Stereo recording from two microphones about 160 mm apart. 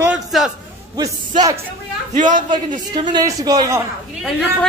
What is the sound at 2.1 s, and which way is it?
Speech, 50° right (ahead or behind).